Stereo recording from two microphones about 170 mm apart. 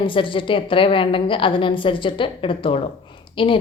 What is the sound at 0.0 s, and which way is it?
A woman's voice, 30° left (ahead or behind).